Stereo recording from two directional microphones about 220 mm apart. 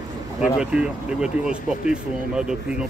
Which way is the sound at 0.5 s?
5° right (ahead or behind).